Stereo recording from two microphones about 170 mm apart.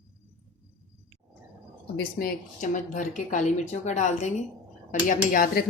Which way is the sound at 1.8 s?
70° left (ahead or behind).